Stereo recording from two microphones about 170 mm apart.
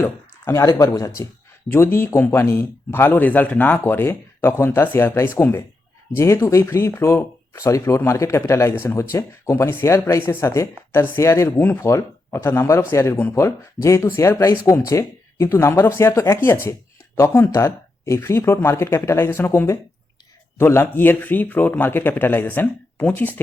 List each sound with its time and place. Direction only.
0.0 s speech: 15° left (ahead or behind)